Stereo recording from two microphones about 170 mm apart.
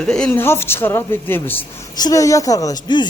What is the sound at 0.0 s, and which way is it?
A man's voice, 5° left (ahead or behind).